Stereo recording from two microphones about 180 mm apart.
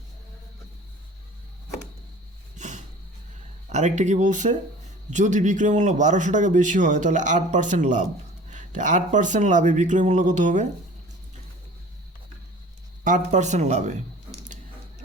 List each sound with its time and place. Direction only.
2.6 s a sound: 40° right (ahead or behind)
3.7 s a man's voice: 40° right (ahead or behind)
13.1 s speech: 40° right (ahead or behind)